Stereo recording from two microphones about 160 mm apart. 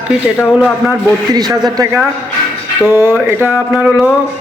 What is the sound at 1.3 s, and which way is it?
Speech, 25° right (ahead or behind).